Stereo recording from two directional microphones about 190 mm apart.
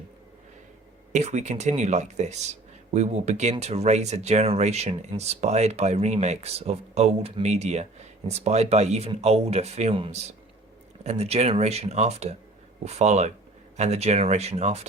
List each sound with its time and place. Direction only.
1.1 s speech: 40° right (ahead or behind)